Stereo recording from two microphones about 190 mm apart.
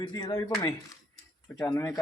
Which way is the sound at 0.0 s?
20° left (ahead or behind).